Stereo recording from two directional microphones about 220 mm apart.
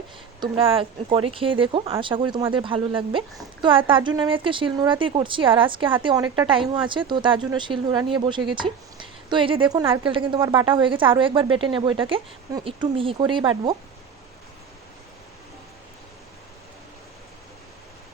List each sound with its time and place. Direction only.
0.5 s speech: 25° right (ahead or behind)